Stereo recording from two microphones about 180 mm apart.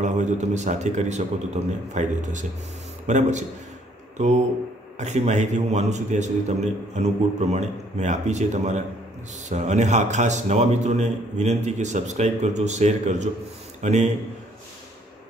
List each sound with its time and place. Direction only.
0.0 s a man's voice: 40° right (ahead or behind)